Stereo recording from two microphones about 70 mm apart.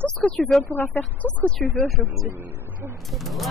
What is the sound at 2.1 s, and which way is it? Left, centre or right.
Speech, right.